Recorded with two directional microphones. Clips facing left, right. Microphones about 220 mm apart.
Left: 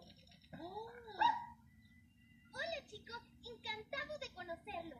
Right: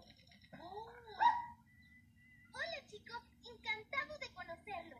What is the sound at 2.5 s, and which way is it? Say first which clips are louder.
A child's voice: left 3 dB; 30° left (ahead or behind).